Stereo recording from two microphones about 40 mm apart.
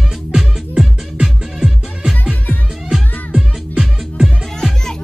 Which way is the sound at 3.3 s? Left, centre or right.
Right.